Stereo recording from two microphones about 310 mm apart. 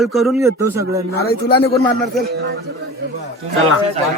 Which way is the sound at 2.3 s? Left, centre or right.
Right.